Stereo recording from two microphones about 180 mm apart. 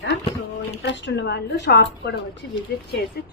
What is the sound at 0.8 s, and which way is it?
A woman's voice, 80° left.